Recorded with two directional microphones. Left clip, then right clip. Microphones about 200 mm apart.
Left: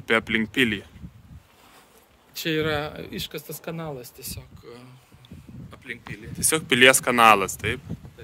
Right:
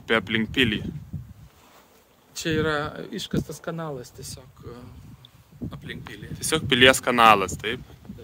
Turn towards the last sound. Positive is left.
turn(degrees=-5)  # may be behind; listen again after turning